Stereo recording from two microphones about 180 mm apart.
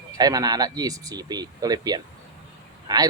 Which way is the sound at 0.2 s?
20° right (ahead or behind).